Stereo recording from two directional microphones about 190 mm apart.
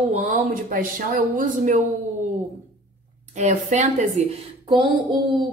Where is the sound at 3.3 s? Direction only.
40° right (ahead or behind).